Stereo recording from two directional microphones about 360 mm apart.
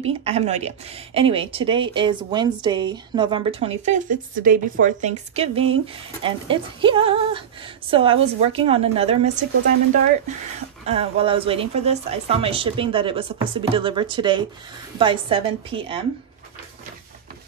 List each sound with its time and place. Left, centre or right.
0.0 s a woman's voice: centre
10.9 s a woman's voice: centre